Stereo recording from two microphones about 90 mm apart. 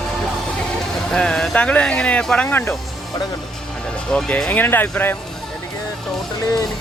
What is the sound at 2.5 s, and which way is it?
Speech, 25° left (ahead or behind).